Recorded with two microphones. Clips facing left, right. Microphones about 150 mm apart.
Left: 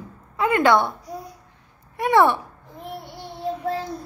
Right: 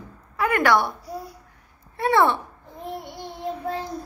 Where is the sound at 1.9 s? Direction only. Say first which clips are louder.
Left 2 dB; 15° left (ahead or behind).